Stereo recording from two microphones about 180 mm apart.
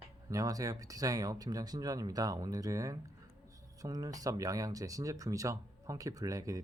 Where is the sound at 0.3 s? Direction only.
20° right (ahead or behind).